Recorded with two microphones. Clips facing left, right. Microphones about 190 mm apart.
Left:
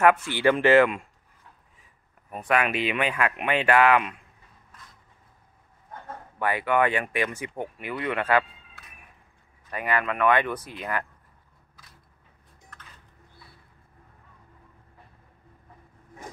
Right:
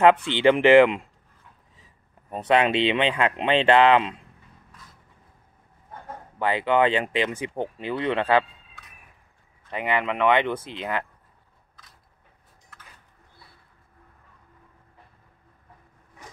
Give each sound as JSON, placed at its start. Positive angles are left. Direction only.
{"t": 0.0, "sound": "speech", "side_deg": -20}
{"t": 2.3, "sound": "speech", "side_deg": -25}
{"t": 6.0, "sound": "speech", "side_deg": -20}
{"t": 9.7, "sound": "speech", "side_deg": -20}